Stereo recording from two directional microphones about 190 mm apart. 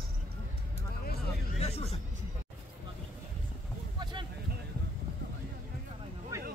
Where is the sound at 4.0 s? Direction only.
25° right (ahead or behind).